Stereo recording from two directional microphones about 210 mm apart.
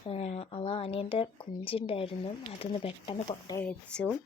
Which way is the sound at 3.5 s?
5° left (ahead or behind).